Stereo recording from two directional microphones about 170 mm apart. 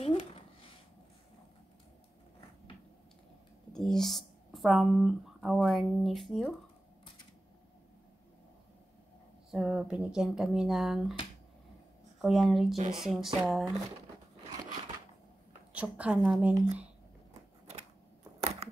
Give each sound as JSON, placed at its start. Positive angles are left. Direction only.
{"t": 0.0, "sound": "a sound", "side_deg": 35}
{"t": 3.7, "sound": "speech", "side_deg": 0}
{"t": 9.5, "sound": "speech", "side_deg": -5}
{"t": 12.2, "sound": "speech", "side_deg": 0}
{"t": 15.7, "sound": "a woman's voice", "side_deg": -10}